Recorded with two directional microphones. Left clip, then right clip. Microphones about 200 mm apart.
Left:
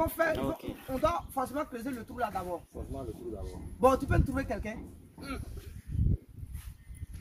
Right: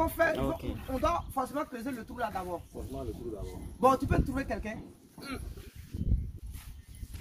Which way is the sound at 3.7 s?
10° left (ahead or behind).